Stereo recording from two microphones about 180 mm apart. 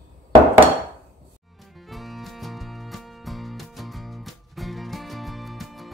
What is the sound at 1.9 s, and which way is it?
Music, centre (ahead or behind).